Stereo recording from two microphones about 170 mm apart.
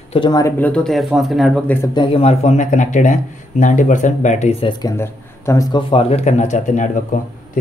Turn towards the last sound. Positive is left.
turn(degrees=45)  # may be behind; listen again after turning